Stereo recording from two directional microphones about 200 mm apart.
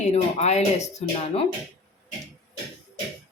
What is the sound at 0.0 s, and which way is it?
Speech, 35° left (ahead or behind).